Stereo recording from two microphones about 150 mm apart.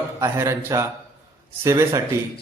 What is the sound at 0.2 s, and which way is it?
A man's voice, 20° right (ahead or behind).